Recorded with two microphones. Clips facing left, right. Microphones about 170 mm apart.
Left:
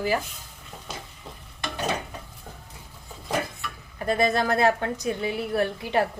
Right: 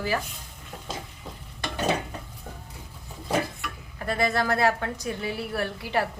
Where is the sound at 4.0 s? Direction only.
20° left (ahead or behind).